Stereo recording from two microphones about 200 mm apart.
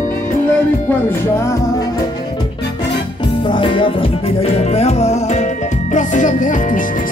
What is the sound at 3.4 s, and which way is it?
Music, 25° left (ahead or behind).